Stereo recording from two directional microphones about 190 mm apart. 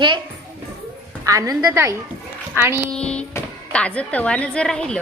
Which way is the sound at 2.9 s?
5° left (ahead or behind).